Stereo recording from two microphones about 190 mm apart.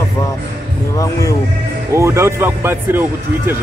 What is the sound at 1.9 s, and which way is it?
Speech, 15° right (ahead or behind).